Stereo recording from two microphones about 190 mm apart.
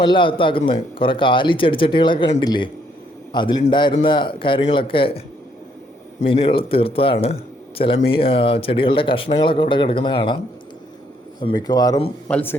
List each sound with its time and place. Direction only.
0.0 s a man's voice: 25° left (ahead or behind)
11.3 s a man's voice: 20° left (ahead or behind)